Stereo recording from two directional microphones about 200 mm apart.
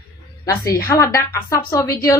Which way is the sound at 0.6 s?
15° left (ahead or behind).